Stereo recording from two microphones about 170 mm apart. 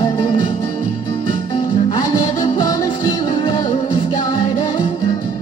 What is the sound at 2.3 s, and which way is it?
Music, 20° left (ahead or behind).